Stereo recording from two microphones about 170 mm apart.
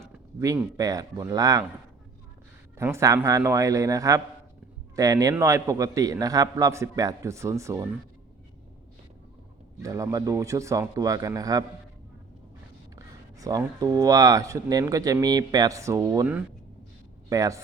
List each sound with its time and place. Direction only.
0.3 s speech: 20° right (ahead or behind)
2.7 s a man's voice: 15° right (ahead or behind)
9.8 s speech: 20° right (ahead or behind)
13.4 s a man's voice: 20° right (ahead or behind)